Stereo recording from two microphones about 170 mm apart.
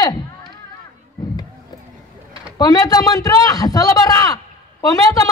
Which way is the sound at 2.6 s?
20° left (ahead or behind).